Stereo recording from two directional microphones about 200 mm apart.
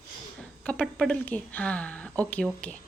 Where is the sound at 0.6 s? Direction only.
5° left (ahead or behind).